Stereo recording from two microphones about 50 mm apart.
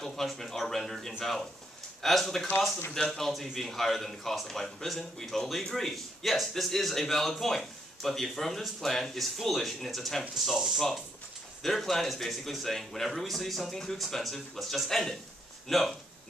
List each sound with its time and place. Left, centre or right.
0.0 s a man's voice: centre